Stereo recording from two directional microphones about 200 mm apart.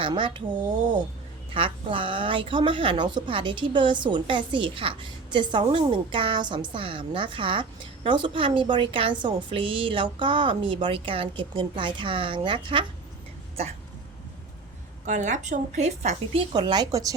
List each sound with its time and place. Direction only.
0.0 s a woman's voice: 25° right (ahead or behind)
1.5 s a woman's voice: 25° right (ahead or behind)
15.0 s a woman's voice: 40° right (ahead or behind)
16.5 s a woman's voice: 20° right (ahead or behind)